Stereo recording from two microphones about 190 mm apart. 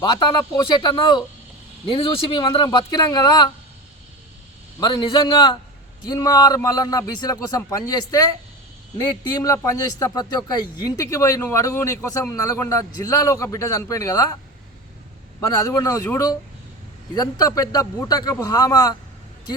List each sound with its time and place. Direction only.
0.0 s a man's voice: 25° left (ahead or behind)
4.8 s a man's voice: 25° left (ahead or behind)
15.4 s a man's voice: 20° left (ahead or behind)